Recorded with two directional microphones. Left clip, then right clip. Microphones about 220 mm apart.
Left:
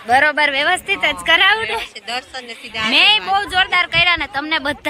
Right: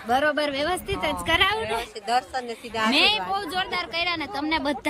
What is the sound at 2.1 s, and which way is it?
Speech, 45° right (ahead or behind).